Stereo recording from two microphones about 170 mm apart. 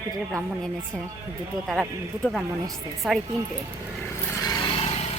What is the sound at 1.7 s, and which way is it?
A woman's voice, centre (ahead or behind).